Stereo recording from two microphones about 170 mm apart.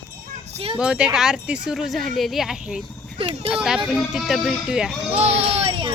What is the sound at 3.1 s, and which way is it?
Speech, 35° right (ahead or behind).